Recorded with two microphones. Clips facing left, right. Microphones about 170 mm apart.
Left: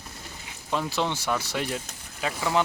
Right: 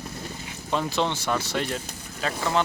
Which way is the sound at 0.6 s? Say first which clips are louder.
Right 2 dB; 5° left (ahead or behind).